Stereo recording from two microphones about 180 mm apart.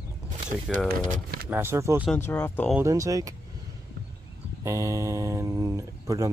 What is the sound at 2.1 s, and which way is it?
Speech, 10° left (ahead or behind).